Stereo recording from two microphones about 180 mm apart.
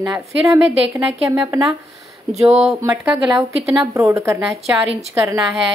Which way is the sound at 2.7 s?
15° right (ahead or behind).